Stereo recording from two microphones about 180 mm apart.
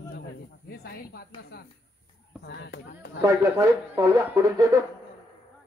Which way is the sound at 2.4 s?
70° left (ahead or behind).